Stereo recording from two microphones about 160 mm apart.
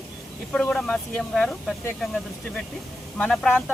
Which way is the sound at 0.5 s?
5° left (ahead or behind).